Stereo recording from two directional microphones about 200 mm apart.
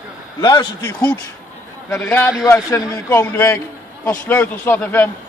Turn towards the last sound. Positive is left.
turn(degrees=10)  # may be behind; listen again after turning